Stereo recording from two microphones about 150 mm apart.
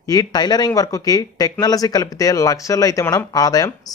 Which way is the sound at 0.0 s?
25° left (ahead or behind).